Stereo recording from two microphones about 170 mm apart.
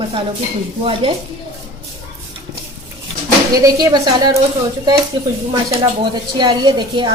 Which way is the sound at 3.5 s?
20° right (ahead or behind).